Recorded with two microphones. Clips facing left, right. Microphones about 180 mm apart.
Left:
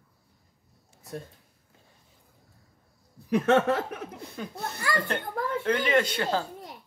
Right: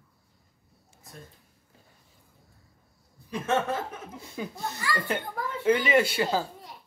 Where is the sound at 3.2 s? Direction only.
65° left (ahead or behind).